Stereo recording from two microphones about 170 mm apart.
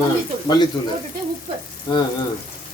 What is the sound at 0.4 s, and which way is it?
Speech, 25° left (ahead or behind).